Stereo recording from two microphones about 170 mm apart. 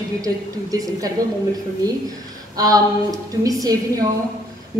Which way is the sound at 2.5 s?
20° right (ahead or behind).